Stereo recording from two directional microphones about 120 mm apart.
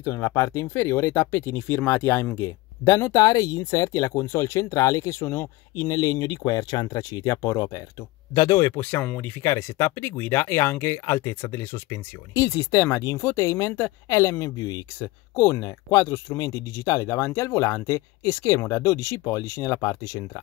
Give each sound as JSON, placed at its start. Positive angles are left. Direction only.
{"t": 0.0, "sound": "speech", "side_deg": 20}
{"t": 8.7, "sound": "speech", "side_deg": 15}
{"t": 9.4, "sound": "speech", "side_deg": 25}